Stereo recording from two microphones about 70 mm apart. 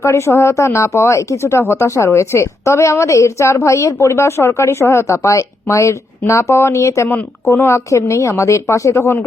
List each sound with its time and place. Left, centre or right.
0.0 s speech: left